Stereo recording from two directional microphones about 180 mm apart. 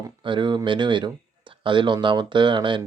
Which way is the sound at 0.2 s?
25° right (ahead or behind).